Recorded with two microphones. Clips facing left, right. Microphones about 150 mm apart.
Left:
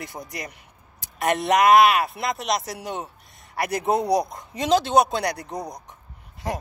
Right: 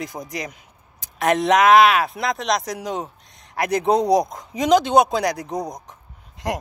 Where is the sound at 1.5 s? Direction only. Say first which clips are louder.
Right 2 dB; centre (ahead or behind).